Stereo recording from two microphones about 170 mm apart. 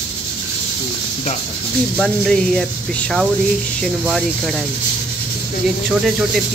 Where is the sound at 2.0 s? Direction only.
5° left (ahead or behind).